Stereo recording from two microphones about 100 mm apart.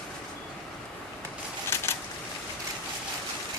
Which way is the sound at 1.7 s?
25° left (ahead or behind).